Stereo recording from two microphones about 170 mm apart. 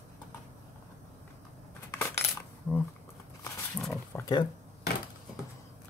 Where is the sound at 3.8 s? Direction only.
Centre (ahead or behind).